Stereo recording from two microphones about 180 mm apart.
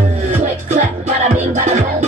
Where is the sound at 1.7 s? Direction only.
40° right (ahead or behind).